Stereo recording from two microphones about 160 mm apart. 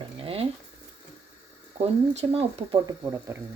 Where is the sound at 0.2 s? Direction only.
35° right (ahead or behind).